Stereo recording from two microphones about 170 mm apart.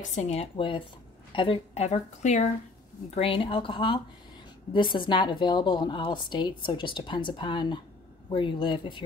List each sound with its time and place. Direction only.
0.0 s speech: 45° left (ahead or behind)
3.2 s a woman's voice: 30° left (ahead or behind)